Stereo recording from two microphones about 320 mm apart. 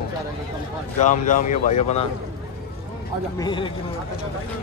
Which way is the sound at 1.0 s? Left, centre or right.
Left.